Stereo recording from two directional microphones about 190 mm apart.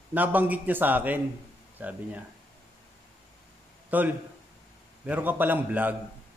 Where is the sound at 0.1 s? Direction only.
10° right (ahead or behind).